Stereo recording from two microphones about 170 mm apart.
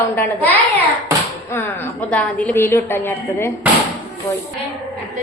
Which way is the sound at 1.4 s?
10° left (ahead or behind).